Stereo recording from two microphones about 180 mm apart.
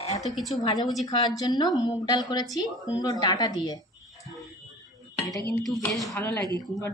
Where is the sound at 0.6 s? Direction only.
25° left (ahead or behind).